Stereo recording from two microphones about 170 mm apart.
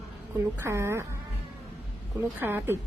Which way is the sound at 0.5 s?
15° right (ahead or behind).